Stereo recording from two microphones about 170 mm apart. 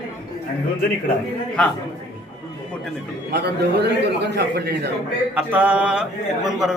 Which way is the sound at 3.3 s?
75° right (ahead or behind).